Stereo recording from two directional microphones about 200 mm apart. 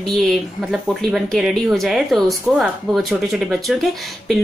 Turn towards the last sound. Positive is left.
turn(degrees=0)  # may be behind; listen again after turning